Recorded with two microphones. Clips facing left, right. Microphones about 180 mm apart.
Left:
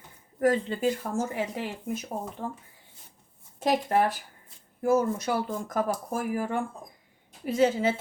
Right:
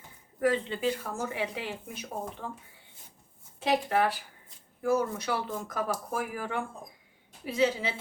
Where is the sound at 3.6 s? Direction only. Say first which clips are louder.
Left 2 dB; 45° left (ahead or behind).